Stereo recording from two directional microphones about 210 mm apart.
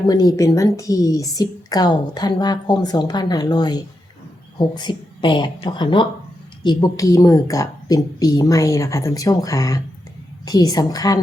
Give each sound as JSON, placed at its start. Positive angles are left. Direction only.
{"t": 0.1, "sound": "a woman's voice", "side_deg": 15}